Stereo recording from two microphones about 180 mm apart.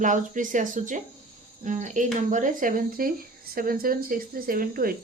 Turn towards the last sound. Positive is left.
turn(degrees=-50)  # may be behind; listen again after turning